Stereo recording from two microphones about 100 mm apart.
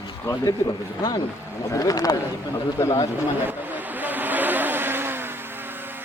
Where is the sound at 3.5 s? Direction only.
20° right (ahead or behind).